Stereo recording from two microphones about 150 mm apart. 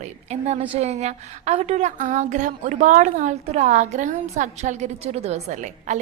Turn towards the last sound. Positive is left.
turn(degrees=-55)  # may be behind; listen again after turning